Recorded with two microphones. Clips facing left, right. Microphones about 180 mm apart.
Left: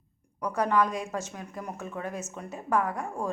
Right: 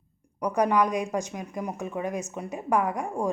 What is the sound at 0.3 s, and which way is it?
Speech, 15° right (ahead or behind).